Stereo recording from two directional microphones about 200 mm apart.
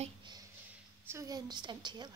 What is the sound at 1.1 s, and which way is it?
A woman's voice, 15° right (ahead or behind).